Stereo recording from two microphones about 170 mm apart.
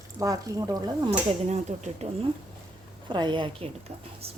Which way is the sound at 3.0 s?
25° right (ahead or behind).